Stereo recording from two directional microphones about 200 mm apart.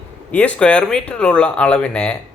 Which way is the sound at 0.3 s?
5° left (ahead or behind).